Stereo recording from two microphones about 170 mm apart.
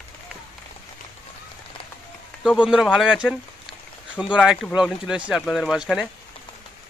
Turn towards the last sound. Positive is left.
turn(degrees=0)  # may be behind; listen again after turning